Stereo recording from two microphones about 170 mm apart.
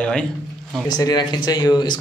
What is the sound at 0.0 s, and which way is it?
Speech, 5° left (ahead or behind).